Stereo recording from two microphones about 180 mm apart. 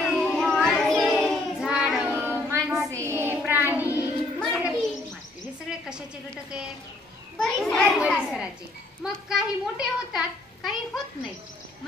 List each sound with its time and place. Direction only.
0.0 s child singing: centre (ahead or behind)
4.4 s a sound: 5° right (ahead or behind)
7.3 s children playing: centre (ahead or behind)
9.0 s a child's voice: centre (ahead or behind)